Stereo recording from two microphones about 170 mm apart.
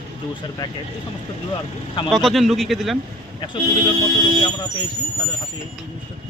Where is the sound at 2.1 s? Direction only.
Centre (ahead or behind).